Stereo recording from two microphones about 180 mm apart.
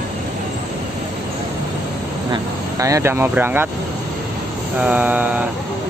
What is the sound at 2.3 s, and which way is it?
Speech, 20° right (ahead or behind).